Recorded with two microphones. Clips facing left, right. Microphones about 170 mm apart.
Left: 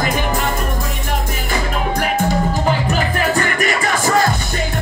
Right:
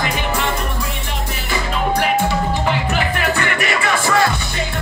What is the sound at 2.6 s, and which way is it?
Music, 40° left (ahead or behind).